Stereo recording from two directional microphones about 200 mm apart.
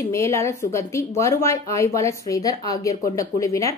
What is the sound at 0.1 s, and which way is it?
A woman's voice, 15° left (ahead or behind).